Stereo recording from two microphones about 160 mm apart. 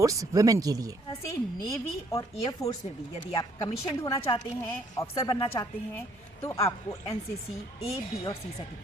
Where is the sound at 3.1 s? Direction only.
45° left (ahead or behind).